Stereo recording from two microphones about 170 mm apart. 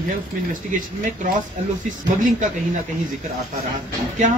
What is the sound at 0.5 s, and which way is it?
Speech, 50° right (ahead or behind).